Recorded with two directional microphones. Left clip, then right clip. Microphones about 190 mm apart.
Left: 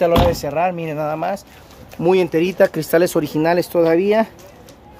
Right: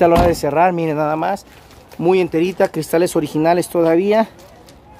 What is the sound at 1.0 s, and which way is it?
Speech, 30° right (ahead or behind).